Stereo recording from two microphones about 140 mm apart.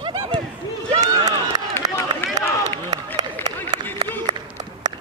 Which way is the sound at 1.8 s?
25° right (ahead or behind).